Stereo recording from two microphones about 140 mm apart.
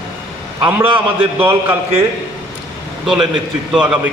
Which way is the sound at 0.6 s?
15° right (ahead or behind).